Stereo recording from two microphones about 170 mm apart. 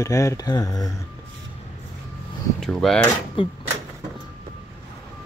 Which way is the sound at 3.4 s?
30° left (ahead or behind).